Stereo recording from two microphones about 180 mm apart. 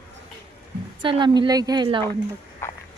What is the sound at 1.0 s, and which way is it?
Speech, 25° right (ahead or behind).